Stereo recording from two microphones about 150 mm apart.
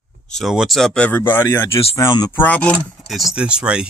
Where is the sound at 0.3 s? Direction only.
Centre (ahead or behind); by 1.6 s 15° left (ahead or behind).